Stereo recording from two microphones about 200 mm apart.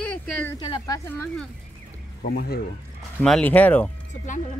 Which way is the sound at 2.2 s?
50° left (ahead or behind).